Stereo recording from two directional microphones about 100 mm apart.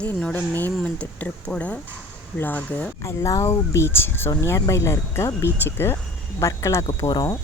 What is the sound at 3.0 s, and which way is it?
Speech, 30° left (ahead or behind).